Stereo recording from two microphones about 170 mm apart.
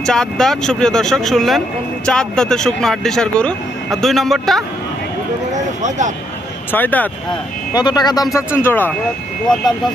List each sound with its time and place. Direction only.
0.0 s speech: 5° left (ahead or behind)
5.8 s speech: 45° right (ahead or behind)
6.7 s speech: 10° left (ahead or behind)
7.7 s speech: 25° left (ahead or behind)